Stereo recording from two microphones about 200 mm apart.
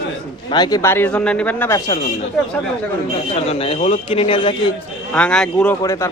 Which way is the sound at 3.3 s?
30° left (ahead or behind).